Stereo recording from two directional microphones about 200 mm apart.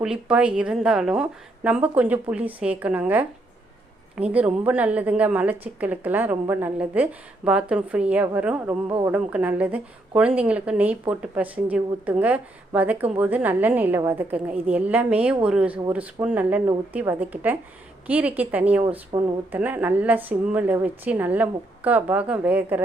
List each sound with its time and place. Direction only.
0.0 s a woman's voice: 5° right (ahead or behind)
19.1 s speech: 25° right (ahead or behind)
19.5 s a woman's voice: 10° right (ahead or behind)